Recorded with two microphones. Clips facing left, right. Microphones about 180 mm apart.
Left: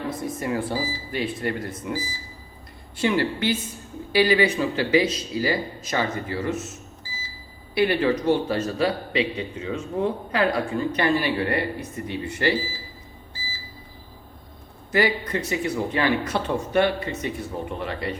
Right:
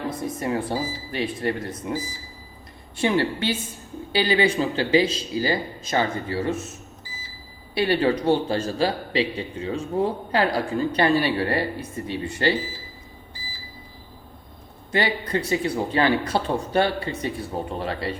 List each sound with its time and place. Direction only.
0.1 s speech: 25° left (ahead or behind)
0.3 s a man's voice: 25° right (ahead or behind)
7.8 s a man's voice: 30° right (ahead or behind)
14.9 s a man's voice: 30° right (ahead or behind)